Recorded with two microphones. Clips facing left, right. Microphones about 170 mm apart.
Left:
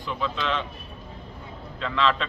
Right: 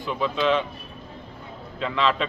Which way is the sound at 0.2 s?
15° right (ahead or behind).